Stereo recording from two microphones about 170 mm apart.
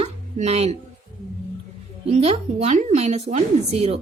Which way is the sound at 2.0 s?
35° right (ahead or behind).